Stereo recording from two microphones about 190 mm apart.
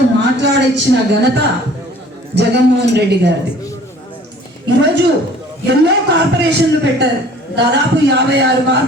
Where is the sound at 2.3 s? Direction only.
60° right (ahead or behind).